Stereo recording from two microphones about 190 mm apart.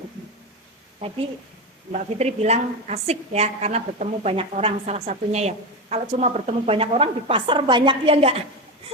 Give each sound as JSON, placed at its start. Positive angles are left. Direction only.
{"t": 1.9, "sound": "a woman's voice", "side_deg": -35}